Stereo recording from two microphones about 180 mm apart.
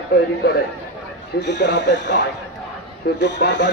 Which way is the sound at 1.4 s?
75° left (ahead or behind).